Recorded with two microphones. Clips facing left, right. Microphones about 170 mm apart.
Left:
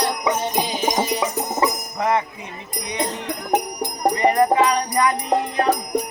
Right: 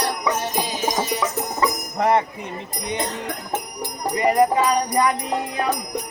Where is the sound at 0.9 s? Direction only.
20° left (ahead or behind).